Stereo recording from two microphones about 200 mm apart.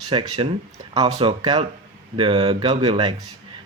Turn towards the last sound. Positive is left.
turn(degrees=-25)  # may be behind; listen again after turning